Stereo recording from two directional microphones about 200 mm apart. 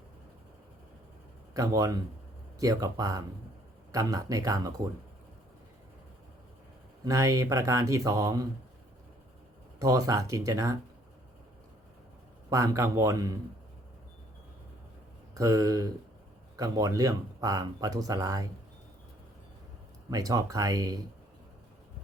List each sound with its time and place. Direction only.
1.5 s speech: 15° right (ahead or behind)
7.0 s speech: 15° right (ahead or behind)
9.7 s speech: 15° right (ahead or behind)
12.5 s speech: 15° right (ahead or behind)
15.4 s speech: 15° right (ahead or behind)
20.1 s speech: 15° right (ahead or behind)